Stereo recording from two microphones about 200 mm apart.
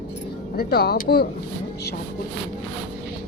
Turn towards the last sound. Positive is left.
turn(degrees=50)  # may be behind; listen again after turning